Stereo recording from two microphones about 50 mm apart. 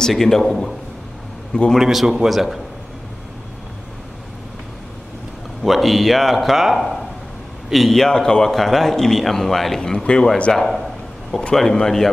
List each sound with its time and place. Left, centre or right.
0.1 s speech: centre
1.8 s speech: centre
5.6 s speech: centre
9.8 s speech: centre
10.6 s speech: centre
11.3 s speech: centre